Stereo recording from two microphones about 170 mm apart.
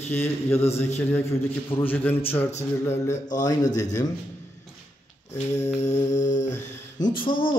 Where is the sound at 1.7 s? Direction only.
10° left (ahead or behind).